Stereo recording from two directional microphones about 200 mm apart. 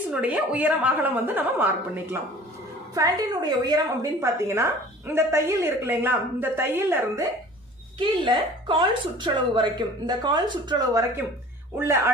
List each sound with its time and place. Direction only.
0.1 s a woman's voice: 5° right (ahead or behind)
2.9 s a woman's voice: 20° right (ahead or behind)
8.0 s a woman's voice: 25° right (ahead or behind)